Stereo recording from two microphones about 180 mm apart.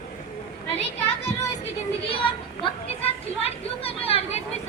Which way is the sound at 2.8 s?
35° left (ahead or behind).